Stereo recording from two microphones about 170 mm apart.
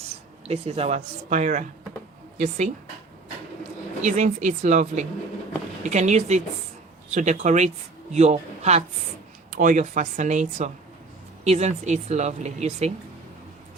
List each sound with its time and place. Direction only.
0.4 s speech: 35° right (ahead or behind)
4.0 s speech: 45° right (ahead or behind)
9.5 s speech: 50° right (ahead or behind)